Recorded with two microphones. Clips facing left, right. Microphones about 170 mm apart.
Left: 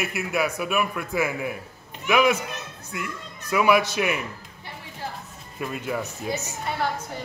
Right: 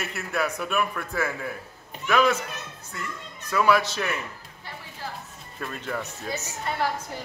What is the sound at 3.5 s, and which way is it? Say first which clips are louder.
Speech: left 2 dB; 15° left (ahead or behind).